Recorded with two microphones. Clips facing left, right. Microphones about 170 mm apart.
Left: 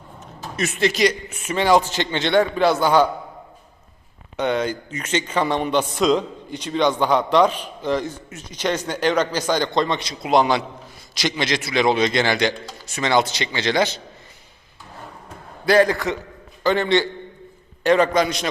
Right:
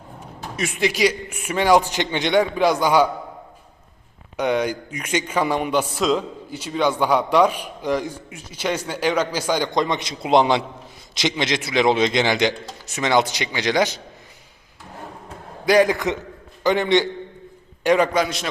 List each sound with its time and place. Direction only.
0.2 s a man's voice: 10° right (ahead or behind)
4.4 s a man's voice: 10° right (ahead or behind)
15.6 s a man's voice: 15° right (ahead or behind)